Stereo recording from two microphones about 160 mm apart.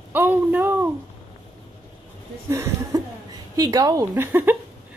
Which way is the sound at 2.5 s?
15° right (ahead or behind).